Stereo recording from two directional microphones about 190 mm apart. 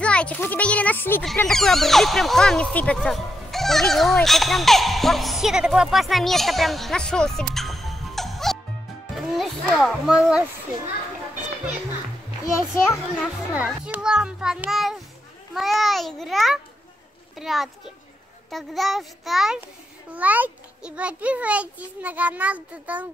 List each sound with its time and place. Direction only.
0.0 s a child's voice: 5° left (ahead or behind)
12.4 s speech: 15° left (ahead or behind)
13.6 s a child's voice: 5° right (ahead or behind)